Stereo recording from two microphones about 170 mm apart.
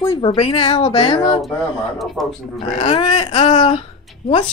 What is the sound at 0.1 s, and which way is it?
Speech, 30° left (ahead or behind).